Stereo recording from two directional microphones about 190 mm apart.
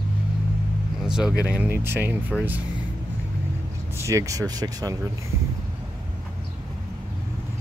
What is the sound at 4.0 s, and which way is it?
Speech, 15° right (ahead or behind).